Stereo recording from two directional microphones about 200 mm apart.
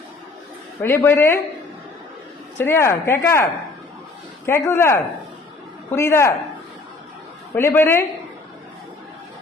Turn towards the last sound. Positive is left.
turn(degrees=10)  # may be behind; listen again after turning